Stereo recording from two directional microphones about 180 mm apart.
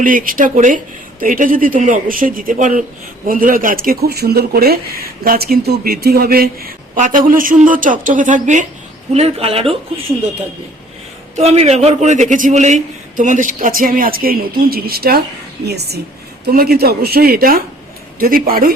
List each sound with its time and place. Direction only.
0.0 s speech: 50° right (ahead or behind)
9.1 s speech: 35° right (ahead or behind)
11.3 s speech: 35° right (ahead or behind); by 18.7 s 55° right (ahead or behind)